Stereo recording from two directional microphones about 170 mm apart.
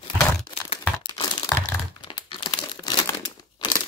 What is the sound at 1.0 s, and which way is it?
Crack, 25° left (ahead or behind).